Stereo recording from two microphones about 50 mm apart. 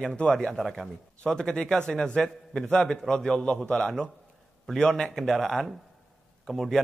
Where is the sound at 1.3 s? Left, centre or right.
Centre.